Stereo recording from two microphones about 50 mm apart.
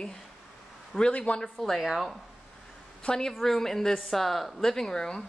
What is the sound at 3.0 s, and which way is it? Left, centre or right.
A woman's voice, centre.